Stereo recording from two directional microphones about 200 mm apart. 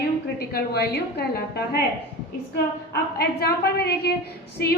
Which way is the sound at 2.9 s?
55° left (ahead or behind).